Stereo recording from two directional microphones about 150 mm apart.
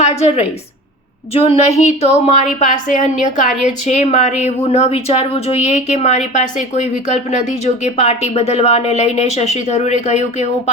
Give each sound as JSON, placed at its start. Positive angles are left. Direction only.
{"t": 0.0, "sound": "a woman's voice", "side_deg": 45}